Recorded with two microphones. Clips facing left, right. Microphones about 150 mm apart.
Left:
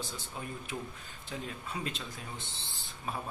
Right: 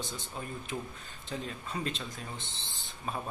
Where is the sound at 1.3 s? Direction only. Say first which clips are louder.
Right 2 dB; 10° left (ahead or behind).